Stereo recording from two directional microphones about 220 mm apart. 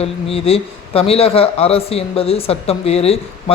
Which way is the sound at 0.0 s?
25° left (ahead or behind).